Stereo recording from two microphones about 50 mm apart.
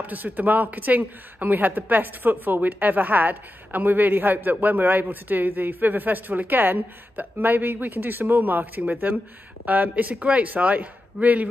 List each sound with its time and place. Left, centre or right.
0.0 s a man's voice: right